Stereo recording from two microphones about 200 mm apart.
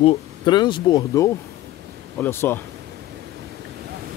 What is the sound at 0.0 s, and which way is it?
Speech, 25° left (ahead or behind).